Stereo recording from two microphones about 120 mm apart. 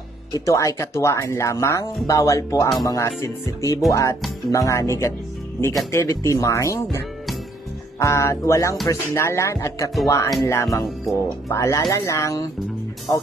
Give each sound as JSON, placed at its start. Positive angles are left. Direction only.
{"t": 0.5, "sound": "speech", "side_deg": 25}
{"t": 8.0, "sound": "speech", "side_deg": 25}